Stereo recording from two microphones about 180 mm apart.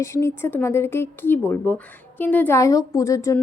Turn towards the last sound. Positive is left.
turn(degrees=15)  # may be behind; listen again after turning